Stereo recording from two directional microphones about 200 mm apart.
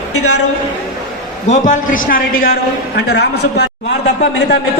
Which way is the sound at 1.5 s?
40° left (ahead or behind).